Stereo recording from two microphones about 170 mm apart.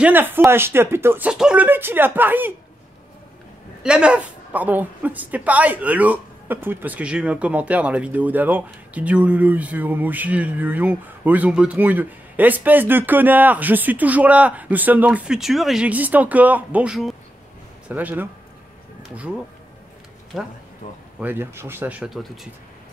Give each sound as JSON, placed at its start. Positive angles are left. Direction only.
{"t": 0.0, "sound": "a woman's voice", "side_deg": -10}
{"t": 3.8, "sound": "a woman's voice", "side_deg": -5}
{"t": 20.3, "sound": "speech", "side_deg": 0}
{"t": 20.8, "sound": "speech", "side_deg": 45}
{"t": 21.2, "sound": "a woman's voice", "side_deg": -15}